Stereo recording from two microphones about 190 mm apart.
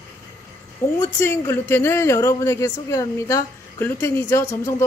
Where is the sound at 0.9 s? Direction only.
15° left (ahead or behind).